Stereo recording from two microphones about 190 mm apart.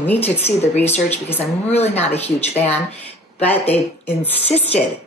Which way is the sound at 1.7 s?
35° left (ahead or behind).